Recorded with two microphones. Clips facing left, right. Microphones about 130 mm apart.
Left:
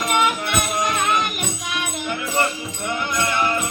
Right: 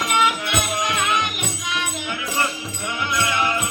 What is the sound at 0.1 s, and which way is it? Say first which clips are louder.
Music: left 1 dB; 50° left (ahead or behind).